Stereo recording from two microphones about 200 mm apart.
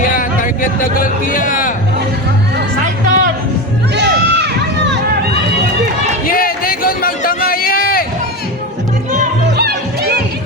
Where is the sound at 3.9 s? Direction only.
55° right (ahead or behind).